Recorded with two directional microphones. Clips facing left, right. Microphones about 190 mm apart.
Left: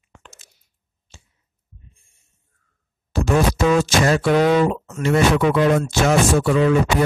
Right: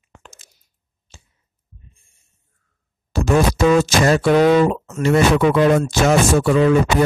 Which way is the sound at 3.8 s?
35° right (ahead or behind).